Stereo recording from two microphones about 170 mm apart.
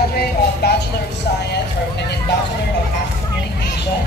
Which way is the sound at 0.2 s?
70° left (ahead or behind).